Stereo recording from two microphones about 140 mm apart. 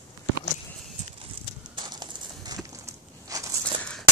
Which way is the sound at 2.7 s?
25° right (ahead or behind).